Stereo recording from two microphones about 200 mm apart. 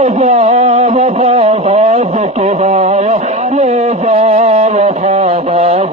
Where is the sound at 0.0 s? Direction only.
35° right (ahead or behind).